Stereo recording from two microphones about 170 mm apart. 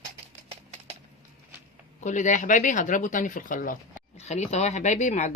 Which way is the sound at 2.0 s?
45° left (ahead or behind).